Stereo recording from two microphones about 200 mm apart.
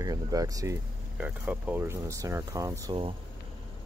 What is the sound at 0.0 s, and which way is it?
Speech, 20° right (ahead or behind).